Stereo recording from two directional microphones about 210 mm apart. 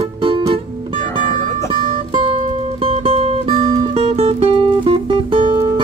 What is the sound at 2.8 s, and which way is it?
Music, 25° right (ahead or behind).